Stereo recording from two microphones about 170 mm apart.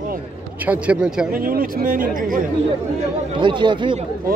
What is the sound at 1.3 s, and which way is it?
Speech, 55° right (ahead or behind).